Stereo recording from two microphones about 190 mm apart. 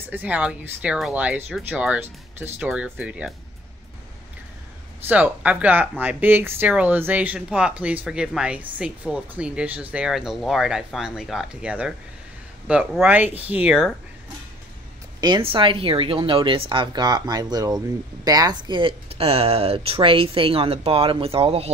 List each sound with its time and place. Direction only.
0.1 s speech: 10° right (ahead or behind)
5.0 s speech: 10° right (ahead or behind)
15.1 s speech: 25° right (ahead or behind)